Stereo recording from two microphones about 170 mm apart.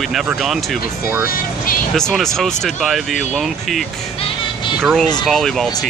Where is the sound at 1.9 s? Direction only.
5° left (ahead or behind).